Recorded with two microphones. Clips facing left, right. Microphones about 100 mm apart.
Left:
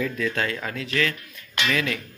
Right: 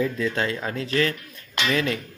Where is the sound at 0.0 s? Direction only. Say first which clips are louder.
Right 2 dB; 25° right (ahead or behind).